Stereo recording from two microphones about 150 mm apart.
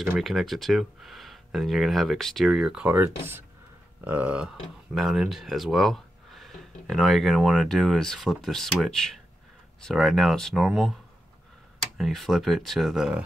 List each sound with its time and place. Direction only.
0.2 s speech: centre (ahead or behind)
12.0 s speech: centre (ahead or behind)